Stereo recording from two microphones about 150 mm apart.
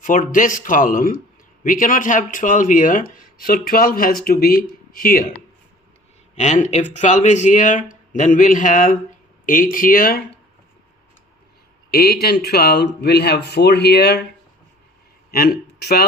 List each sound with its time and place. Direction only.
0.0 s speech: 65° left (ahead or behind); by 4.6 s 85° left
4.9 s speech: 75° left (ahead or behind)
6.3 s speech: 50° left (ahead or behind); by 10.2 s 80° left
11.9 s speech: 90° left
15.3 s speech: 90° left